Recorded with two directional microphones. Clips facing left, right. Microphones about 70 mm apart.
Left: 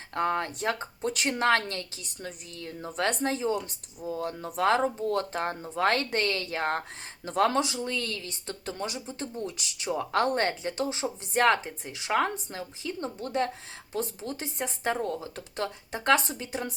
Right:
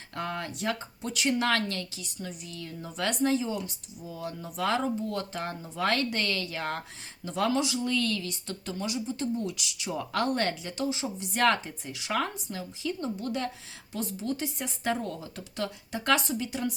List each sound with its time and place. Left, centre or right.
0.1 s a woman's voice: left